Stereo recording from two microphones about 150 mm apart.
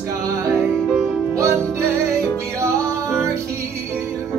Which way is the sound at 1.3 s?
20° right (ahead or behind).